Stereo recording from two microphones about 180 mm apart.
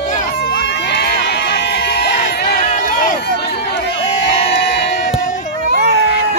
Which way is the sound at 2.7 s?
45° left (ahead or behind).